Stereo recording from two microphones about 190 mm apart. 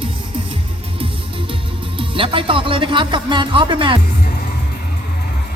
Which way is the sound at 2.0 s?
25° right (ahead or behind).